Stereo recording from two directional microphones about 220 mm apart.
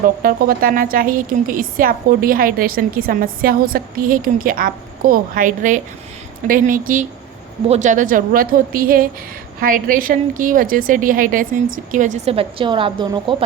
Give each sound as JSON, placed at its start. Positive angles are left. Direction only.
{"t": 0.2, "sound": "a woman's voice", "side_deg": -40}